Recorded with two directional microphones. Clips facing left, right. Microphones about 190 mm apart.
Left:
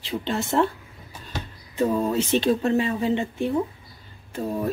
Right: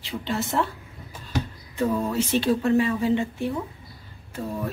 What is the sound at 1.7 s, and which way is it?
A woman's voice, 20° left (ahead or behind).